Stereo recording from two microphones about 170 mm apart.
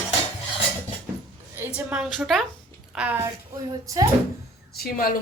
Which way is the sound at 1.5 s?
10° right (ahead or behind).